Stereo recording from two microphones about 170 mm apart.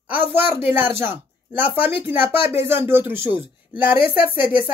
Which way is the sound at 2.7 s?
15° right (ahead or behind).